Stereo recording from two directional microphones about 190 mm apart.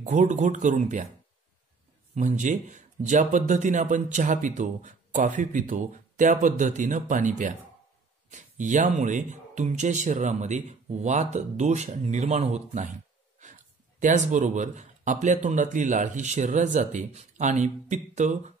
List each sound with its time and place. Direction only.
0.0 s speech: 40° right (ahead or behind)
2.1 s speech: 40° right (ahead or behind)